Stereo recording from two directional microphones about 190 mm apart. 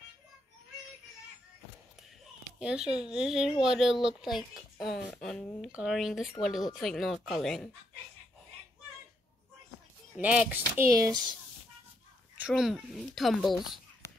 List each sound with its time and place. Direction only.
2.6 s speech: 5° right (ahead or behind)
10.1 s speech: 5° right (ahead or behind)
12.4 s speech: 5° right (ahead or behind)